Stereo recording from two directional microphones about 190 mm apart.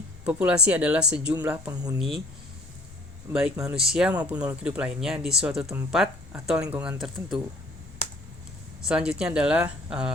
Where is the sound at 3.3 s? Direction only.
5° right (ahead or behind).